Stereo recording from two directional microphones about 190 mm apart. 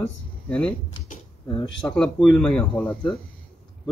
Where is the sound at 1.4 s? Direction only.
20° left (ahead or behind).